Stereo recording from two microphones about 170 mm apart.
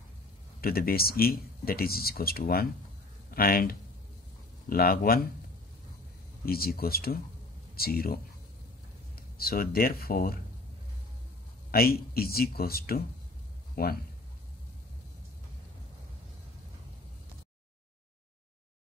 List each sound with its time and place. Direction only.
0.6 s speech: 60° left (ahead or behind)
6.4 s speech: 60° left (ahead or behind)
11.7 s speech: 60° left (ahead or behind)